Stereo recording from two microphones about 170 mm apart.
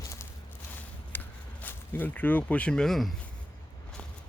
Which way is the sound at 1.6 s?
10° left (ahead or behind).